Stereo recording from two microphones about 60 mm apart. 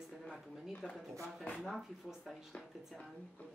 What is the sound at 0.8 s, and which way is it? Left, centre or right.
Speech, centre.